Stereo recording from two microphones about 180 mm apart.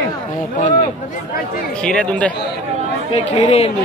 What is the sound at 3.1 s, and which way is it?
Speech, 35° left (ahead or behind).